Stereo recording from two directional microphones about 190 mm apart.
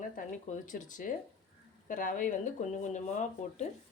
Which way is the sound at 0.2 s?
45° left (ahead or behind).